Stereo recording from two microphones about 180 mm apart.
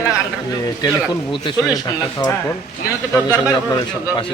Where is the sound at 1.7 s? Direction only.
25° left (ahead or behind).